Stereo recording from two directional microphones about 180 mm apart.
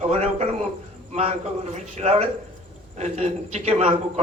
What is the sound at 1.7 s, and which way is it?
A man's voice, 40° right (ahead or behind).